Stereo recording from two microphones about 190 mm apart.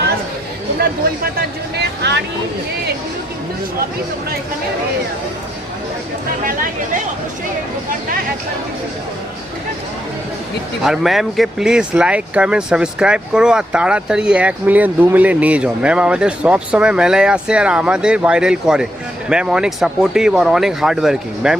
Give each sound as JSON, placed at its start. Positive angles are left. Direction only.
{"t": 0.8, "sound": "speech", "side_deg": -55}
{"t": 10.8, "sound": "speech", "side_deg": 0}